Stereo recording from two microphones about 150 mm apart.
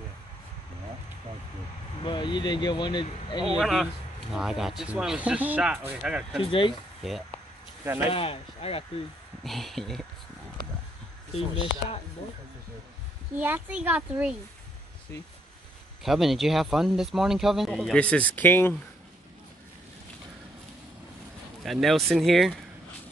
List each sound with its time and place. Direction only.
2.0 s speech: 30° left (ahead or behind)
3.4 s speech: centre (ahead or behind)
6.4 s speech: 35° left (ahead or behind)
7.0 s speech: centre (ahead or behind)
7.8 s speech: 15° right (ahead or behind)
8.1 s speech: 40° left (ahead or behind)
9.4 s speech: centre (ahead or behind)
13.4 s speech: 10° right (ahead or behind)
16.0 s speech: centre (ahead or behind)
21.6 s speech: centre (ahead or behind)